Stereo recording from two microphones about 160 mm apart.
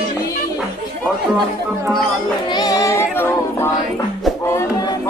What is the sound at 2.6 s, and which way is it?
Female singing, 20° left (ahead or behind).